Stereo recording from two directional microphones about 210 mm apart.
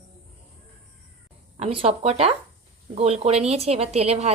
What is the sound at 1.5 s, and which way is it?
A woman's voice, 30° right (ahead or behind).